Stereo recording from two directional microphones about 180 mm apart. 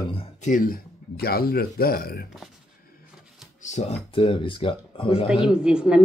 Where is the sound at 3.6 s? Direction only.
40° left (ahead or behind).